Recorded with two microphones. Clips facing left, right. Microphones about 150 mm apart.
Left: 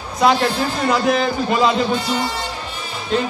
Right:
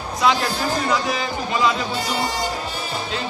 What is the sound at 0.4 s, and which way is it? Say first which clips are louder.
Speech: left 3 dB; 40° right (ahead or behind).